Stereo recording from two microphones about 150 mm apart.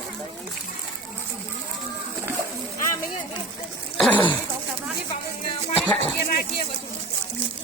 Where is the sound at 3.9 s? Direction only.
10° left (ahead or behind).